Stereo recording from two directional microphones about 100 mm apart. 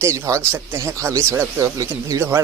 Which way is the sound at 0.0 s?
30° right (ahead or behind).